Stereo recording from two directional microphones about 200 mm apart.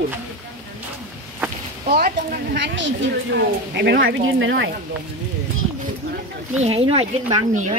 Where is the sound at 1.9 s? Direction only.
50° right (ahead or behind); by 4.7 s 70° right (ahead or behind).